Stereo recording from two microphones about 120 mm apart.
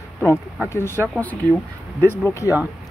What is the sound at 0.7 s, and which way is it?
Speech, 20° left (ahead or behind).